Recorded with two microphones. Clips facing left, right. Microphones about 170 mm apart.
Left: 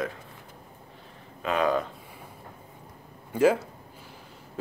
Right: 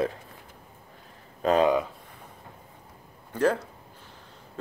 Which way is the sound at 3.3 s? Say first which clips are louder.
Left 3 dB; 5° left (ahead or behind).